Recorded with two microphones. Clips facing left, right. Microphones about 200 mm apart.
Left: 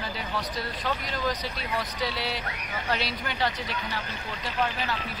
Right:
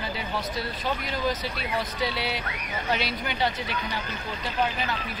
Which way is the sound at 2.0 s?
Centre (ahead or behind).